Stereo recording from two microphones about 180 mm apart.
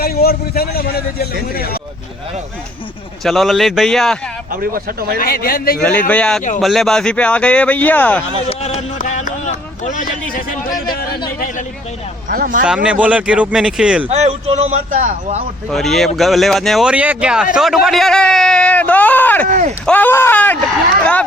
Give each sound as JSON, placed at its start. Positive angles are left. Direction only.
{"t": 0.0, "sound": "a man's voice", "side_deg": 55}
{"t": 3.2, "sound": "speech", "side_deg": 0}
{"t": 4.6, "sound": "speech", "side_deg": -55}
{"t": 5.2, "sound": "a man's voice", "side_deg": 55}
{"t": 5.8, "sound": "speech", "side_deg": 10}
{"t": 8.4, "sound": "a sound", "side_deg": 35}
{"t": 12.3, "sound": "speech", "side_deg": -50}
{"t": 12.6, "sound": "speech", "side_deg": -5}
{"t": 14.1, "sound": "a man's voice", "side_deg": -35}
{"t": 15.7, "sound": "speech", "side_deg": 0}
{"t": 19.5, "sound": "speech", "side_deg": -45}
{"t": 19.8, "sound": "speech", "side_deg": 10}